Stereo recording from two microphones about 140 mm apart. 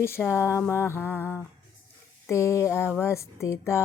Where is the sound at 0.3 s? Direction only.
15° left (ahead or behind).